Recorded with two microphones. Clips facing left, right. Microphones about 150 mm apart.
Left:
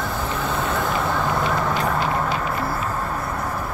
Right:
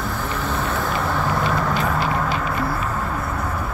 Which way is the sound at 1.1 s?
Centre (ahead or behind).